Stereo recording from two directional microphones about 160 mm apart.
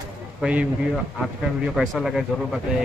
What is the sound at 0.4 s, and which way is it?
Speech, 10° right (ahead or behind).